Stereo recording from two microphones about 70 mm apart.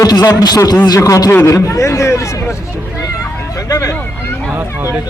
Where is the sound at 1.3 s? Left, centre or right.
Left.